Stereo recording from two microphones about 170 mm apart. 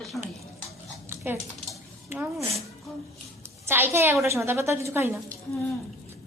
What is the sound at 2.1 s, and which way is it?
Speech, 15° right (ahead or behind).